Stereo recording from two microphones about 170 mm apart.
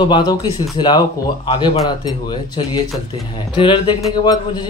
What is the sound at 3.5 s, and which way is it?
Speech, 30° left (ahead or behind).